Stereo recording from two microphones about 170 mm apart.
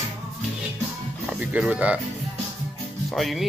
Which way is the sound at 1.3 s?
5° right (ahead or behind).